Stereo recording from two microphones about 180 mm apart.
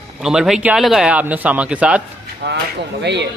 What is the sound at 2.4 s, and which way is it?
Speech, 70° right (ahead or behind).